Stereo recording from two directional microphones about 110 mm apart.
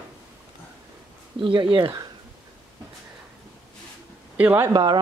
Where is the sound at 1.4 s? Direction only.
50° right (ahead or behind).